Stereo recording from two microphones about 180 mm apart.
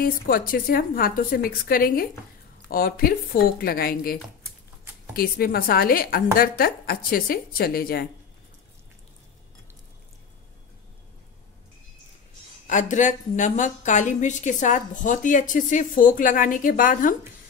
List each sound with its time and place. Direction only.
0.0 s a woman's voice: 55° left (ahead or behind)
12.6 s a woman's voice: 45° left (ahead or behind)